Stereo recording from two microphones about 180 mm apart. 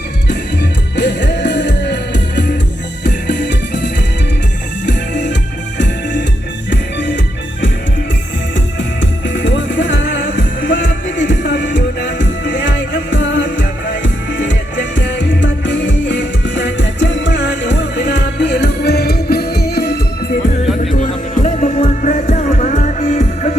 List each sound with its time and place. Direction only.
0.9 s music: 75° left (ahead or behind)
4.9 s music: 70° left (ahead or behind)
8.5 s music: 85° left; by 20.0 s 60° left (ahead or behind)
20.9 s music: 45° left (ahead or behind)